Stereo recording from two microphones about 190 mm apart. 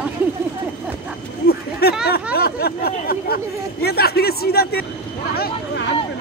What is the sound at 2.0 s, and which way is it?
Speech, 55° left (ahead or behind).